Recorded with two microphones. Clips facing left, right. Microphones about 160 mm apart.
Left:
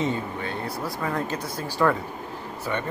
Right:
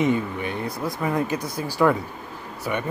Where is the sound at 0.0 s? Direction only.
15° right (ahead or behind).